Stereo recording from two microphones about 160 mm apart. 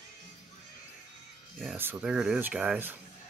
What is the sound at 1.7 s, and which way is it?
Speech, 10° right (ahead or behind).